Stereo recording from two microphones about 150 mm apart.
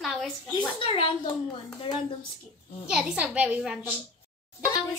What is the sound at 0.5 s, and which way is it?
Speech, 35° left (ahead or behind).